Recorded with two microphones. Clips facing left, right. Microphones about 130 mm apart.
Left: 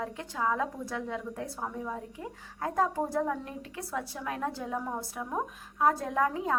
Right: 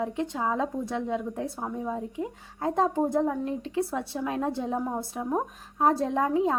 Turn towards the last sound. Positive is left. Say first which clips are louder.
# right 5 dB
turn(degrees=-25)  # may be behind; listen again after turning